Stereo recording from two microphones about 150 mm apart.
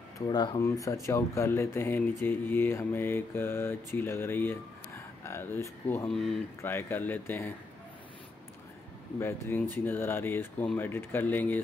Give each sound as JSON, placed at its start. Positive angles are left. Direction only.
{"t": 0.3, "sound": "speech", "side_deg": 30}
{"t": 6.0, "sound": "speech", "side_deg": 0}
{"t": 6.6, "sound": "speech", "side_deg": 15}
{"t": 9.2, "sound": "speech", "side_deg": 15}